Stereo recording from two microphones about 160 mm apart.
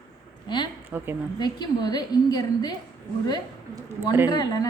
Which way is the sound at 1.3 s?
25° left (ahead or behind).